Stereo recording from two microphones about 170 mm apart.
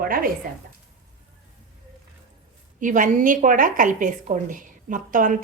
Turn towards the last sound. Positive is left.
turn(degrees=-50)  # may be behind; listen again after turning